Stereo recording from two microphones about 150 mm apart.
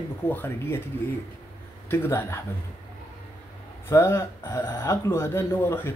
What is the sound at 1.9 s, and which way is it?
Speech, 15° left (ahead or behind).